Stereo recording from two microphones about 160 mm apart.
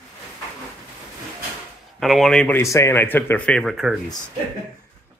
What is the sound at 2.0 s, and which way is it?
Speech, centre (ahead or behind).